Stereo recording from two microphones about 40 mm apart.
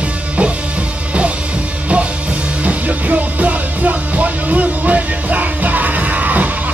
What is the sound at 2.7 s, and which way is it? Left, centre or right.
Music, right.